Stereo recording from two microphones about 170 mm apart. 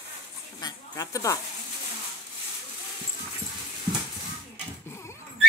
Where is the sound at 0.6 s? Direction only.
20° left (ahead or behind).